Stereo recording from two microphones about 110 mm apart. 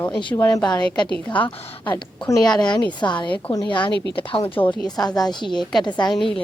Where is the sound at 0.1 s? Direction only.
45° left (ahead or behind).